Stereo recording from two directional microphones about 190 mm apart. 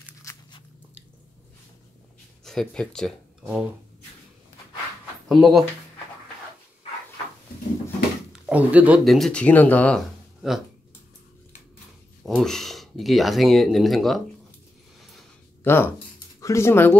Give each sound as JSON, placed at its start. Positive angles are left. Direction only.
{"t": 0.2, "sound": "crunch", "side_deg": 15}
{"t": 2.4, "sound": "speech", "side_deg": 0}
{"t": 5.3, "sound": "speech", "side_deg": 0}
{"t": 8.3, "sound": "speech", "side_deg": -5}
{"t": 12.2, "sound": "speech", "side_deg": 0}
{"t": 15.6, "sound": "speech", "side_deg": 10}